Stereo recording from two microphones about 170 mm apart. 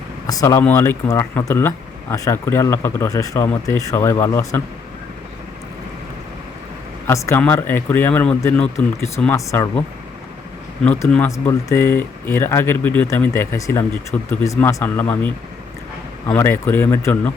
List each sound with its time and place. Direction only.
0.3 s speech: 20° left (ahead or behind)
7.1 s speech: 15° left (ahead or behind)
10.8 s speech: 10° left (ahead or behind)
16.3 s speech: 15° left (ahead or behind)